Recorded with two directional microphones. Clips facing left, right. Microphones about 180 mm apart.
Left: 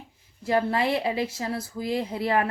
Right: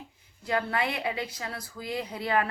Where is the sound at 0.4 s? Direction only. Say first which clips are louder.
Left 5 dB; 25° left (ahead or behind).